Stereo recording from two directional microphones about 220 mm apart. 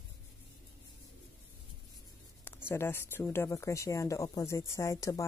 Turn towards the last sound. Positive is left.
turn(degrees=15)  # may be behind; listen again after turning